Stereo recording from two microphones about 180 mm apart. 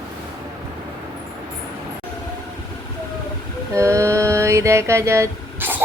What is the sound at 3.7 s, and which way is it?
Mantra, 15° right (ahead or behind).